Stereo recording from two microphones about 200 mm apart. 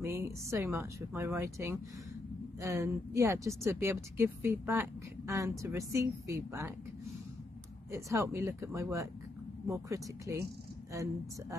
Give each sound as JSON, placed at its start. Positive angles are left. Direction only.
{"t": 0.0, "sound": "a woman's voice", "side_deg": -15}
{"t": 7.9, "sound": "a woman's voice", "side_deg": -15}